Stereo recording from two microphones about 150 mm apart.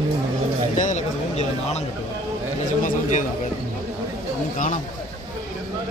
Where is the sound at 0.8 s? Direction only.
50° left (ahead or behind).